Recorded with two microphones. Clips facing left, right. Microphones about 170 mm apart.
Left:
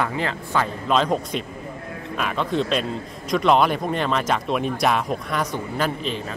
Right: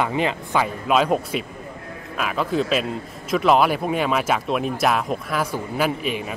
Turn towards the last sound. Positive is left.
turn(degrees=-10)  # may be behind; listen again after turning